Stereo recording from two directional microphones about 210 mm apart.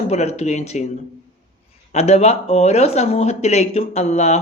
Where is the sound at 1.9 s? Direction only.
30° left (ahead or behind).